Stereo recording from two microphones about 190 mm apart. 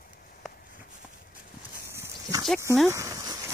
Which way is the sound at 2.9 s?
15° right (ahead or behind).